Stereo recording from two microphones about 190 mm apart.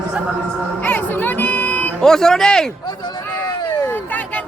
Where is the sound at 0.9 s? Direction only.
10° left (ahead or behind).